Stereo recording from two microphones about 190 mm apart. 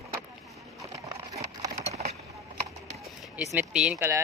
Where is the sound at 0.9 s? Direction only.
15° right (ahead or behind).